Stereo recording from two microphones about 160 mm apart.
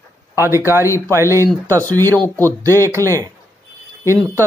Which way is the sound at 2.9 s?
20° right (ahead or behind).